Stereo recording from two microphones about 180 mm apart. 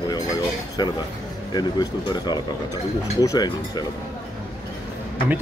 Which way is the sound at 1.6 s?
25° left (ahead or behind).